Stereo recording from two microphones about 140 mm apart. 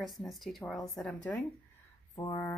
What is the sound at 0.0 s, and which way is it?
Speech, centre (ahead or behind).